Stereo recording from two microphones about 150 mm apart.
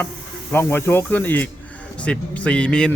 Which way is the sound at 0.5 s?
15° left (ahead or behind).